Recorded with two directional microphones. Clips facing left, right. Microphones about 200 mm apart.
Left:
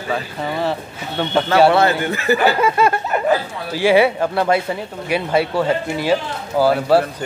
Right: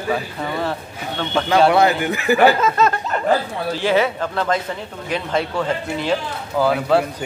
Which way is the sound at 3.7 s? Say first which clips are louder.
Left 5 dB; 10° left (ahead or behind).